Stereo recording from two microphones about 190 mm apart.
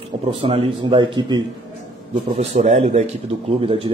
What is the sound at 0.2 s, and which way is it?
A man's voice, 30° right (ahead or behind).